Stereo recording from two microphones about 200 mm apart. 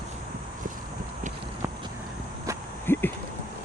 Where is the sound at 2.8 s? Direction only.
10° left (ahead or behind).